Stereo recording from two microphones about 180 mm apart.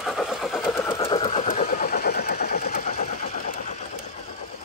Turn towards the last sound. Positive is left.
turn(degrees=45)  # may be behind; listen again after turning